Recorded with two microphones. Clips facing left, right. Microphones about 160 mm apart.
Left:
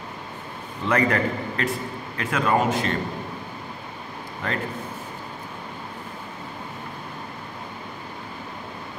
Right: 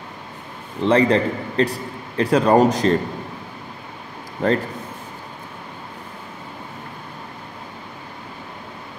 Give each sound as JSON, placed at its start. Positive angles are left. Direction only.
{"t": 0.8, "sound": "a man's voice", "side_deg": -30}
{"t": 4.4, "sound": "a man's voice", "side_deg": -35}